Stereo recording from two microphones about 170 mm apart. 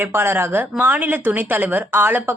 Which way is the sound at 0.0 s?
15° right (ahead or behind).